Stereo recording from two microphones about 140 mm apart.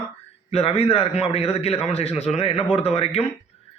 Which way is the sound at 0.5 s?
45° left (ahead or behind).